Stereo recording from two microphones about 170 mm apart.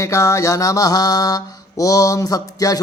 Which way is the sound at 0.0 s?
20° left (ahead or behind).